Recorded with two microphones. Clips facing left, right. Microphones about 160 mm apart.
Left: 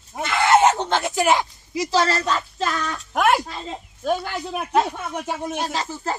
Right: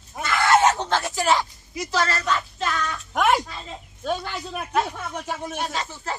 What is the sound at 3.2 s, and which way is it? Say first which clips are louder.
Speech: left 2 dB; 5° left (ahead or behind).